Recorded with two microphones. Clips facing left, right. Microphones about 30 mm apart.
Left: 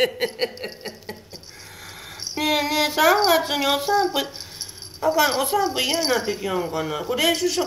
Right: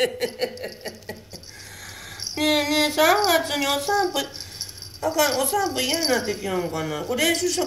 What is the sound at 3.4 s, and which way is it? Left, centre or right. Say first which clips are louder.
Speech: left 2 dB; centre.